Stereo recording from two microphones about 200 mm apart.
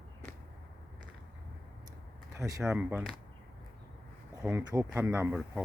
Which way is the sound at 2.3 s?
15° right (ahead or behind).